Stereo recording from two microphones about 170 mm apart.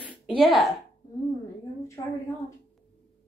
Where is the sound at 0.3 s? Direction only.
Centre (ahead or behind).